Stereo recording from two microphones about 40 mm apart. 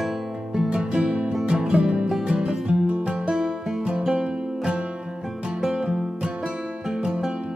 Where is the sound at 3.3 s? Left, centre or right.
Centre.